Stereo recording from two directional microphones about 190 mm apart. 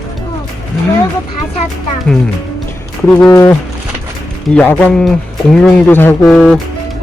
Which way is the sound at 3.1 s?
15° left (ahead or behind).